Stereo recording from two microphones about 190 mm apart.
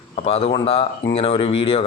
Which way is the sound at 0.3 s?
30° left (ahead or behind).